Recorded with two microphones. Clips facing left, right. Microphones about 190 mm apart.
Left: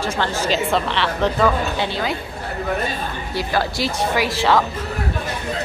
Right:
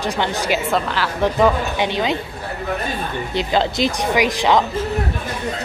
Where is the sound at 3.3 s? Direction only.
20° right (ahead or behind).